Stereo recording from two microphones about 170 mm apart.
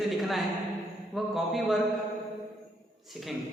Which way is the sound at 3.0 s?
Centre (ahead or behind).